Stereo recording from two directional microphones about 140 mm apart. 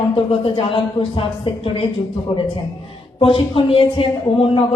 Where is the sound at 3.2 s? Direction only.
40° left (ahead or behind).